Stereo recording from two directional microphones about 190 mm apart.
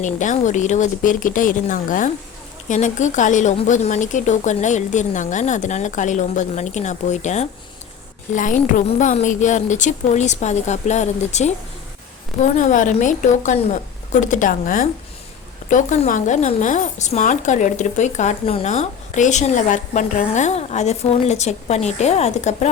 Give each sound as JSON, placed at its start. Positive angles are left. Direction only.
{"t": 0.0, "sound": "a woman's voice", "side_deg": 40}
{"t": 12.5, "sound": "a woman's voice", "side_deg": 40}